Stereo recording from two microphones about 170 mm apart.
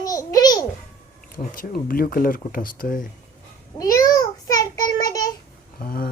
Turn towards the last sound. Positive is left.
turn(degrees=60)  # may be behind; listen again after turning